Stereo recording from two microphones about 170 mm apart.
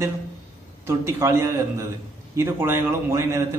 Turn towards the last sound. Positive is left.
turn(degrees=-15)  # may be behind; listen again after turning